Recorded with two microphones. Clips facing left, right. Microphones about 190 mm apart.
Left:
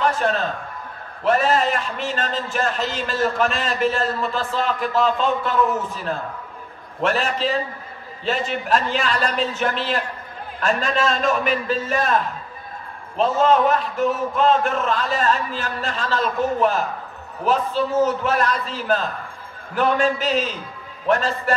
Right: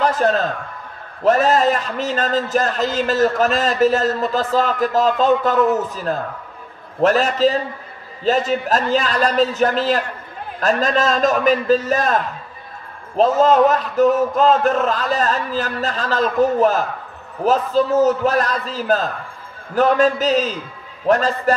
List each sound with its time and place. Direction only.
0.2 s a man's voice: 40° right (ahead or behind)
7.0 s a man's voice: 40° right (ahead or behind)